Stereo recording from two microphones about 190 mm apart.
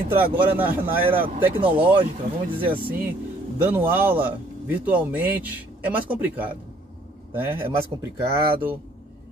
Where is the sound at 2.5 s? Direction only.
25° right (ahead or behind).